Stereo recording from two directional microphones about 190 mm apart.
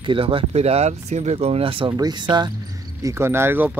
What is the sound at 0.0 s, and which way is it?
Speech, 25° right (ahead or behind).